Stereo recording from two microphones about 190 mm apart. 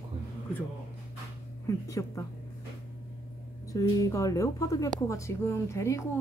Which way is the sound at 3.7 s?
20° left (ahead or behind).